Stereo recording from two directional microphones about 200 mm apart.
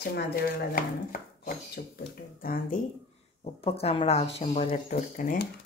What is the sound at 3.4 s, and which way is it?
Speech, 30° left (ahead or behind).